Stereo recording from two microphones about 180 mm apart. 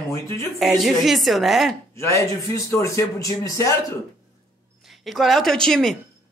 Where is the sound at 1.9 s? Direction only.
15° left (ahead or behind).